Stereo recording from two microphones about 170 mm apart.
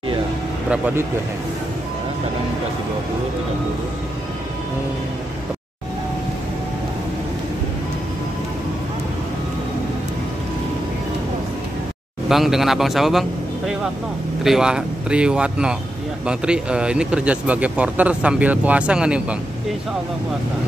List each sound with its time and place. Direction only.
0.7 s speech: 10° right (ahead or behind)
12.3 s speech: centre (ahead or behind)
14.4 s speech: 5° right (ahead or behind)